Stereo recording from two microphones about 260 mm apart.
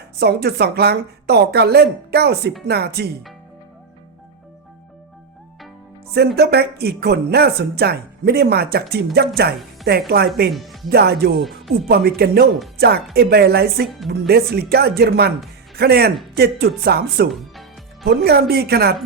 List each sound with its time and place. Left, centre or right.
0.2 s speech: right
6.1 s speech: right
10.5 s speech: centre
10.8 s speech: right